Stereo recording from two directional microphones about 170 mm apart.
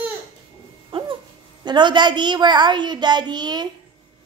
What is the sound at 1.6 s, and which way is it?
A child's voice, 25° right (ahead or behind).